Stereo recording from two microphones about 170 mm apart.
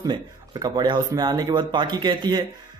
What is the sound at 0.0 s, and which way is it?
A man's voice, 25° right (ahead or behind).